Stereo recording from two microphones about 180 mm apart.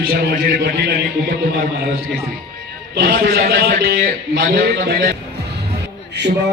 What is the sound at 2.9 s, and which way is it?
A man's voice, 55° right (ahead or behind).